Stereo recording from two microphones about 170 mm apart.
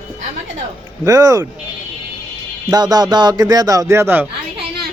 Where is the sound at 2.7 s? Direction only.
25° right (ahead or behind).